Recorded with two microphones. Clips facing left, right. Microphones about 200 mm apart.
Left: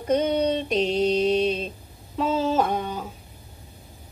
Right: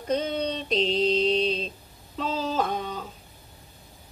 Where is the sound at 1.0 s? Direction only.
60° left (ahead or behind).